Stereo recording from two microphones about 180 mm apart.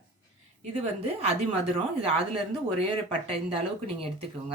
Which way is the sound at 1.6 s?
30° right (ahead or behind).